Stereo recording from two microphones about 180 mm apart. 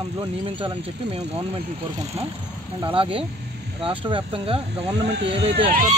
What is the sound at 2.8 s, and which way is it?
Speech, 30° right (ahead or behind).